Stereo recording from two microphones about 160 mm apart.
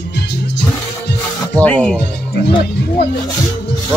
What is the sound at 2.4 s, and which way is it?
Speech, 75° left (ahead or behind).